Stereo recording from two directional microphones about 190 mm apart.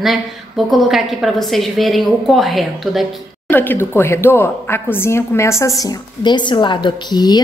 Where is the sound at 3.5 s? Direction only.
10° left (ahead or behind).